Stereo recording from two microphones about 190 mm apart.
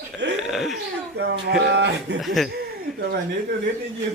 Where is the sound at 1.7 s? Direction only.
65° right (ahead or behind).